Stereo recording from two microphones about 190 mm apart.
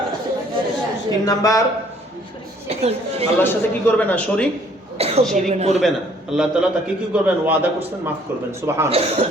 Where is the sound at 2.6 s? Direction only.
35° right (ahead or behind).